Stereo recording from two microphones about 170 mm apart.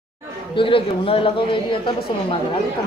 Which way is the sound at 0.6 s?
30° left (ahead or behind).